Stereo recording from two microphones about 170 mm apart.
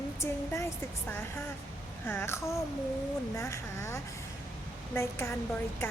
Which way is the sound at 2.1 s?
15° left (ahead or behind).